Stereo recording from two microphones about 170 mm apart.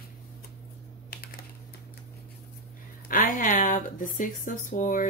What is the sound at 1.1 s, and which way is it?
Typing, 60° left (ahead or behind).